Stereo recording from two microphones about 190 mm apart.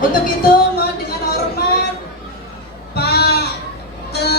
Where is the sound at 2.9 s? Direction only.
55° left (ahead or behind).